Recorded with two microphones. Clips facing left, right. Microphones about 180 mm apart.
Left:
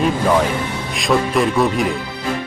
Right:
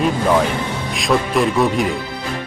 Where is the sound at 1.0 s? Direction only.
Centre (ahead or behind).